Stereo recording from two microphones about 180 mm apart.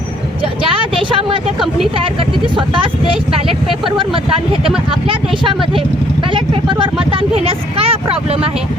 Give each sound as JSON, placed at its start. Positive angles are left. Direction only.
{"t": 0.4, "sound": "vehicle", "side_deg": -30}
{"t": 1.5, "sound": "vehicle", "side_deg": 0}
{"t": 2.0, "sound": "vehicle", "side_deg": -30}
{"t": 4.9, "sound": "speech", "side_deg": -30}